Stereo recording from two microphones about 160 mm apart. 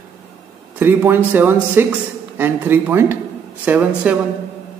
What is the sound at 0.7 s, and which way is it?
A man's voice, 15° right (ahead or behind).